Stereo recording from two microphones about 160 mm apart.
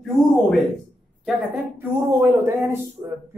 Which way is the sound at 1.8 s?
15° right (ahead or behind).